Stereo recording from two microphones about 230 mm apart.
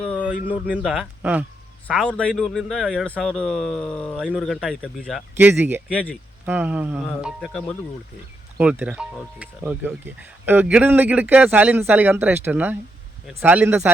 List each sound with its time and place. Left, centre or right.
0.0 s a sound: centre
0.7 s speech: centre
5.4 s speech: centre
5.9 s speech: centre
6.4 s speech: centre